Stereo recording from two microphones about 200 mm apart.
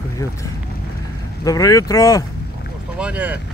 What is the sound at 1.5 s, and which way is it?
Speech, 15° left (ahead or behind).